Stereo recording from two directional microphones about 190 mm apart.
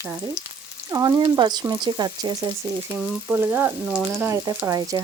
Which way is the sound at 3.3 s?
5° right (ahead or behind).